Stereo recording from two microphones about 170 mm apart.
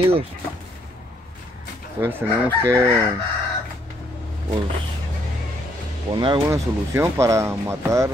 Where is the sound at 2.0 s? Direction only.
10° right (ahead or behind).